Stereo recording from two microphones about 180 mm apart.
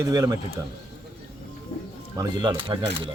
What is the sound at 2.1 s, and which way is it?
Speech, 25° right (ahead or behind).